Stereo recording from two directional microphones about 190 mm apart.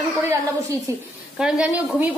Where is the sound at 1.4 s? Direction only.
5° right (ahead or behind).